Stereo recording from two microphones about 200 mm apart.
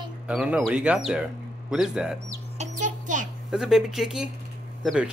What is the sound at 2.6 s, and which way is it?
Bird, 40° right (ahead or behind).